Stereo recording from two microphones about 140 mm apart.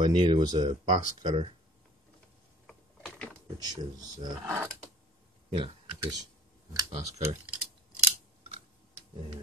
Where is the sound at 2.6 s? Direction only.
5° left (ahead or behind).